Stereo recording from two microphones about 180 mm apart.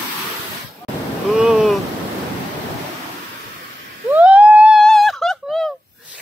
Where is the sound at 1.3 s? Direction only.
5° right (ahead or behind).